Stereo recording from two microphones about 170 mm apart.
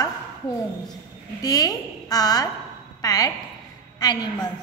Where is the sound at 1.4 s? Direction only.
20° left (ahead or behind).